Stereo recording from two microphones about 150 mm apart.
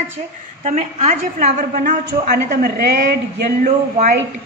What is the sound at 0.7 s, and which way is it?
Speech, 50° right (ahead or behind).